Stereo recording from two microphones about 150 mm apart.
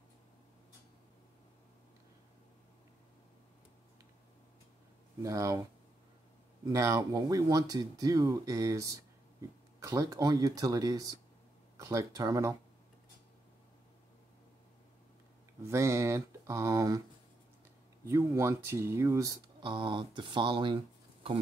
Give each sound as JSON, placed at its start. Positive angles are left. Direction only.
{"t": 5.2, "sound": "speech", "side_deg": -20}
{"t": 6.6, "sound": "speech", "side_deg": -20}
{"t": 15.6, "sound": "speech", "side_deg": -20}
{"t": 18.0, "sound": "speech", "side_deg": -15}